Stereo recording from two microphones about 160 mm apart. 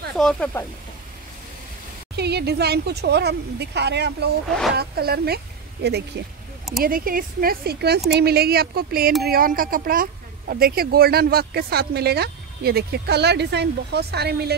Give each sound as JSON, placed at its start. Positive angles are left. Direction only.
{"t": 0.1, "sound": "speech", "side_deg": 5}
{"t": 2.1, "sound": "speech", "side_deg": -90}
{"t": 4.7, "sound": "speech", "side_deg": -75}
{"t": 6.8, "sound": "speech", "side_deg": -65}